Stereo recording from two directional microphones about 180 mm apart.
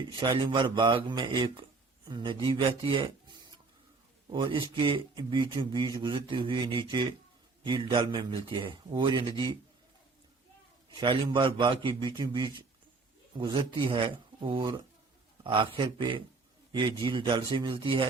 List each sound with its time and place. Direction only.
0.2 s a man's voice: 25° right (ahead or behind)
4.3 s a man's voice: 25° right (ahead or behind)
10.9 s a man's voice: 25° right (ahead or behind)